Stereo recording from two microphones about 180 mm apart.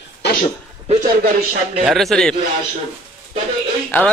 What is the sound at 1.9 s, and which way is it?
Speech, centre (ahead or behind).